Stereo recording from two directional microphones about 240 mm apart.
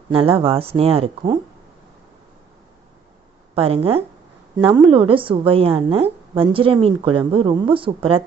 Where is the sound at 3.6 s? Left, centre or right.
Right.